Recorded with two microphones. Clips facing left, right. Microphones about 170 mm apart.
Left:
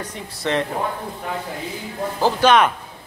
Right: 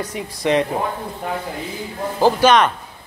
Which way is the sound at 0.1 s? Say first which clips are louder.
Right 5 dB; 15° right (ahead or behind).